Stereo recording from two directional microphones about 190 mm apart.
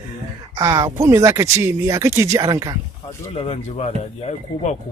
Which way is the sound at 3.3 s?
35° left (ahead or behind).